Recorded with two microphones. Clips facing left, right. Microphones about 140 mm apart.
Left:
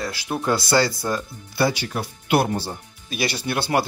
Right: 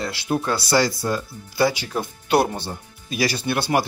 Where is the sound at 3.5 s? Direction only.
25° left (ahead or behind).